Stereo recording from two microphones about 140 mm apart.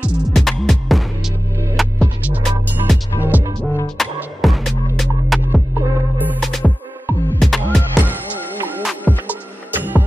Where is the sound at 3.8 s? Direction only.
Centre (ahead or behind).